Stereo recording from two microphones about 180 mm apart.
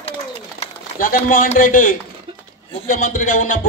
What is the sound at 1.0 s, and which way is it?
A man's voice, 50° left (ahead or behind).